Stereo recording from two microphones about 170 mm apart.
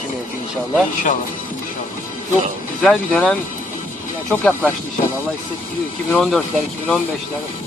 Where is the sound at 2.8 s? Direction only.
5° left (ahead or behind).